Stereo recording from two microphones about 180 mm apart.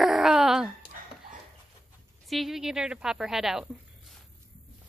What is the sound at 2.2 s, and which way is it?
A woman's voice, centre (ahead or behind).